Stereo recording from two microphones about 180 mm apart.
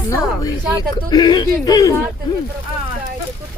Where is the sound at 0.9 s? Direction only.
25° left (ahead or behind).